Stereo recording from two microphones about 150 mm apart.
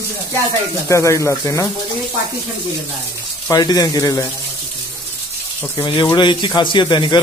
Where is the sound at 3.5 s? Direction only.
25° left (ahead or behind).